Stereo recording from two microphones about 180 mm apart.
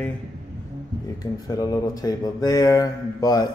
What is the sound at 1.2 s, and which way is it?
Speech, 20° left (ahead or behind).